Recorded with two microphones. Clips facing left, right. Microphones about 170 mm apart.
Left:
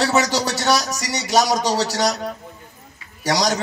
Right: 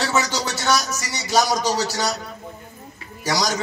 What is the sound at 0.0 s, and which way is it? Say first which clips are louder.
A man's voice: left 4 dB; 35° left (ahead or behind).